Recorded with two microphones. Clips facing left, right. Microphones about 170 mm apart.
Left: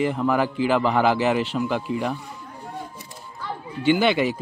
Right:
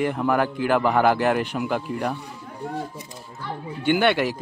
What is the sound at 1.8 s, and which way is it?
Speech, 5° left (ahead or behind).